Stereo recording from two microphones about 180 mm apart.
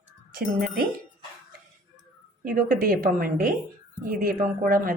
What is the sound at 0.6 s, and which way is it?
Speech, 55° right (ahead or behind).